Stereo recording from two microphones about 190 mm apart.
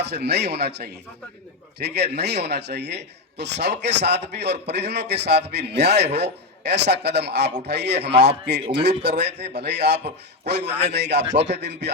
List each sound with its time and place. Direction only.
0.0 s a man's voice: 60° right (ahead or behind)